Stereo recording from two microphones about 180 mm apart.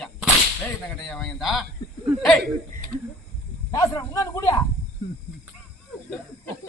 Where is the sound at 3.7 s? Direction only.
20° left (ahead or behind).